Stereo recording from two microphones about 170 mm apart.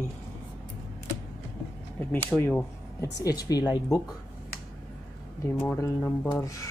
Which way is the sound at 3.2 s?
20° left (ahead or behind).